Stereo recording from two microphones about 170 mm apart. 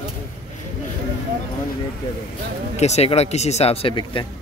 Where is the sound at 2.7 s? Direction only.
40° left (ahead or behind).